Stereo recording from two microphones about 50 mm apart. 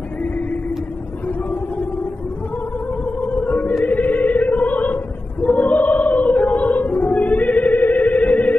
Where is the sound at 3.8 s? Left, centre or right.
Left.